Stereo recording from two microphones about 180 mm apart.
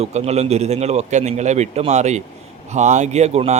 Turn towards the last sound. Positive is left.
turn(degrees=-35)  # may be behind; listen again after turning